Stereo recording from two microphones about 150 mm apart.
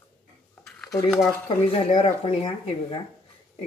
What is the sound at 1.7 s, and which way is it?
Speech, 45° left (ahead or behind).